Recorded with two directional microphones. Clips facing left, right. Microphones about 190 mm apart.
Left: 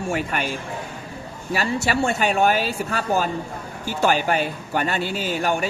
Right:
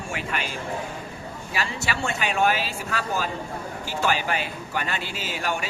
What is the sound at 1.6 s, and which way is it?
A man's voice, 40° left (ahead or behind).